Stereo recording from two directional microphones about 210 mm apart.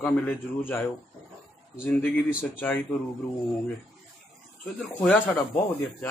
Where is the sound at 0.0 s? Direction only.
10° left (ahead or behind).